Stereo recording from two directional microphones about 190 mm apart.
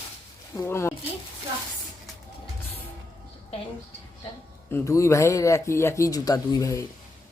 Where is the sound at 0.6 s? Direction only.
15° left (ahead or behind).